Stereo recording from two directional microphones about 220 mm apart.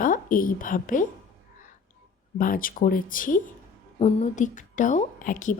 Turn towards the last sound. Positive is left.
turn(degrees=35)  # may be behind; listen again after turning